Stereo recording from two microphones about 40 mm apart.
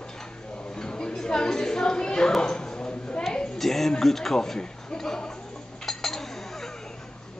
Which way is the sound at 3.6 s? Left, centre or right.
Centre.